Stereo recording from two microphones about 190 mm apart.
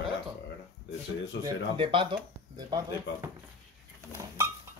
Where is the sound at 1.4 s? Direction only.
25° right (ahead or behind).